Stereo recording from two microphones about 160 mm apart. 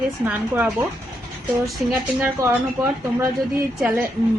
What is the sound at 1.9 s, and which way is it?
Speech, 15° right (ahead or behind).